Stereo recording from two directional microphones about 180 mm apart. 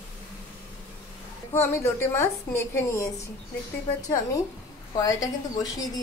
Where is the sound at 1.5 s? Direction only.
15° left (ahead or behind).